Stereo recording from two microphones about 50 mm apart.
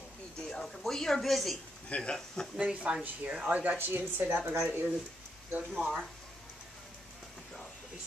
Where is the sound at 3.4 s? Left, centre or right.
Right.